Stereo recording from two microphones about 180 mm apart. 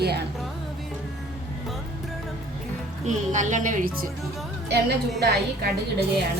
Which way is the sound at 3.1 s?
45° right (ahead or behind).